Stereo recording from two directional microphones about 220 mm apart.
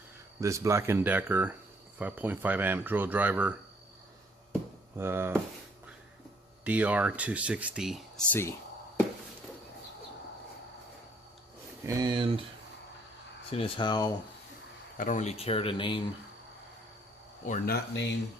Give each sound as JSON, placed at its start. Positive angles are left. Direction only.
{"t": 0.3, "sound": "speech", "side_deg": -15}
{"t": 4.9, "sound": "speech", "side_deg": -10}
{"t": 6.7, "sound": "speech", "side_deg": -5}
{"t": 11.9, "sound": "speech", "side_deg": -15}
{"t": 13.5, "sound": "speech", "side_deg": 25}
{"t": 14.9, "sound": "speech", "side_deg": 35}
{"t": 17.4, "sound": "speech", "side_deg": 40}